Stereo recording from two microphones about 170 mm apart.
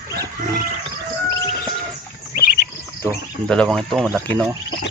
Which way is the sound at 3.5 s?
5° left (ahead or behind).